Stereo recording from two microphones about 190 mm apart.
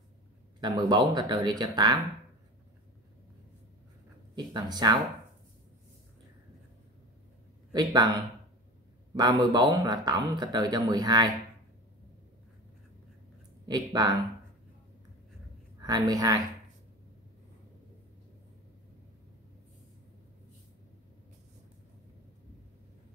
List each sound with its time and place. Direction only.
0.6 s a man's voice: 20° right (ahead or behind)
4.4 s a man's voice: 20° right (ahead or behind)
7.7 s a man's voice: 20° right (ahead or behind)
9.1 s a man's voice: 20° right (ahead or behind)
13.7 s a man's voice: 20° right (ahead or behind)
15.8 s a man's voice: 20° right (ahead or behind)